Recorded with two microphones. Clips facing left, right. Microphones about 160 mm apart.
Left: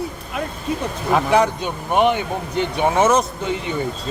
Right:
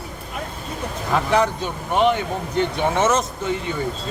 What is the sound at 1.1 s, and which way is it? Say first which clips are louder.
Speech: left 2 dB; 15° left (ahead or behind).